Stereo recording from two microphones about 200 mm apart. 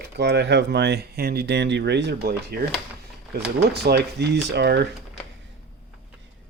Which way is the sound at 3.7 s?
55° right (ahead or behind).